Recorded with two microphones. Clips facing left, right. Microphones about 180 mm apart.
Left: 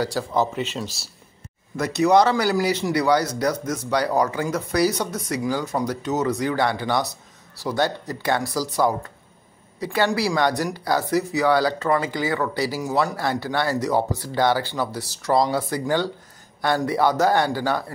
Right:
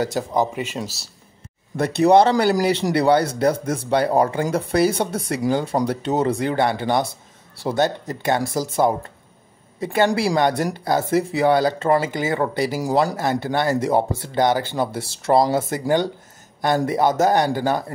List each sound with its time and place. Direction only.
0.0 s speech: 20° right (ahead or behind)
1.7 s speech: 40° right (ahead or behind)
2.0 s speech: 25° right (ahead or behind)
9.9 s speech: 25° right (ahead or behind)